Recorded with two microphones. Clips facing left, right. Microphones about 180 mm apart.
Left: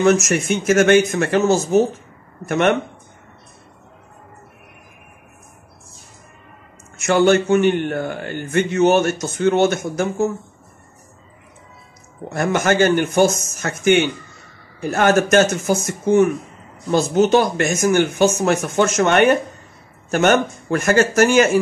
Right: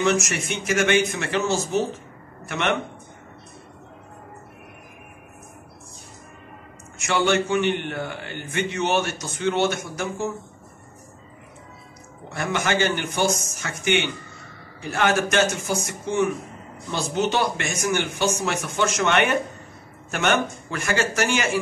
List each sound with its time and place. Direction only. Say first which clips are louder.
0.0 s a man's voice: left 7 dB; 45° left (ahead or behind)
7.0 s a man's voice: left 7 dB; 45° left (ahead or behind)
12.3 s a man's voice: left 7 dB; 45° left (ahead or behind)